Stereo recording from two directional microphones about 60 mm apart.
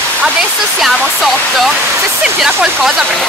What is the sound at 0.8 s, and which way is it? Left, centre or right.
Speech, centre.